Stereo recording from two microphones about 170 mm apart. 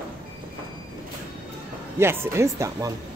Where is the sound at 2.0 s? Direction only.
15° right (ahead or behind).